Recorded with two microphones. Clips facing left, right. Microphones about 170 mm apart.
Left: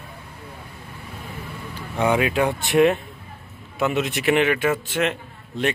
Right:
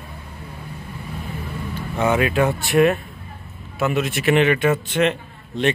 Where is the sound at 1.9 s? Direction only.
15° left (ahead or behind).